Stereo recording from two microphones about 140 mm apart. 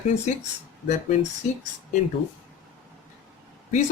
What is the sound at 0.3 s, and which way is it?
Speech, 60° left (ahead or behind).